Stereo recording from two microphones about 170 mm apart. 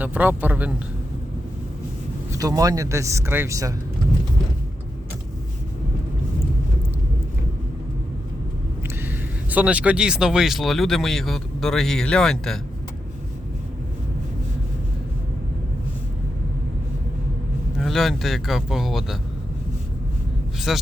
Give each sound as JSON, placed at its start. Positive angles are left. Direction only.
{"t": 0.0, "sound": "speech", "side_deg": -10}
{"t": 2.3, "sound": "speech", "side_deg": -20}
{"t": 9.0, "sound": "speech", "side_deg": -10}
{"t": 17.7, "sound": "speech", "side_deg": 0}
{"t": 20.7, "sound": "speech", "side_deg": 0}